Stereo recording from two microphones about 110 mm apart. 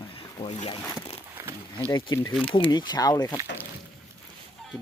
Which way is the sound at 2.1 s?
40° left (ahead or behind).